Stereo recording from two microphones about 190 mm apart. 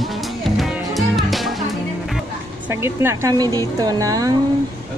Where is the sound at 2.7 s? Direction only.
15° right (ahead or behind).